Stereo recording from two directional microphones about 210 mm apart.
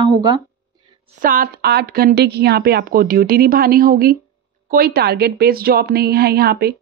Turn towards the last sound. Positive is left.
turn(degrees=-45)  # may be behind; listen again after turning